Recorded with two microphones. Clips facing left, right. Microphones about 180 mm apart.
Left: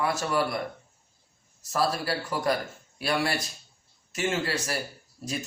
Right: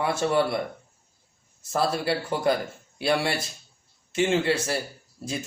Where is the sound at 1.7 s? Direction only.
25° right (ahead or behind).